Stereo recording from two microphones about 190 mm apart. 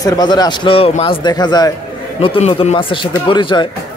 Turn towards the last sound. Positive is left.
turn(degrees=25)  # may be behind; listen again after turning